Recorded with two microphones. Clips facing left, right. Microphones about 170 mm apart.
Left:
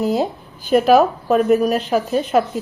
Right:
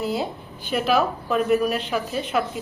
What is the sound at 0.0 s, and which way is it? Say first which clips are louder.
A woman's voice: left 7 dB; 40° left (ahead or behind).